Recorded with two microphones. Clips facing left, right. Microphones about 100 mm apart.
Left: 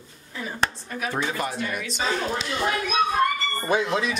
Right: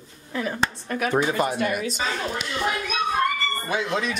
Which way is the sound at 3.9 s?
5° left (ahead or behind).